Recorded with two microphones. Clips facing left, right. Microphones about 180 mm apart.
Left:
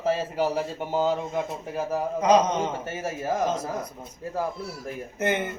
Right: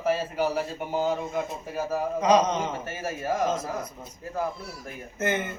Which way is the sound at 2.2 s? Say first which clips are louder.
Left 1 dB; 10° left (ahead or behind).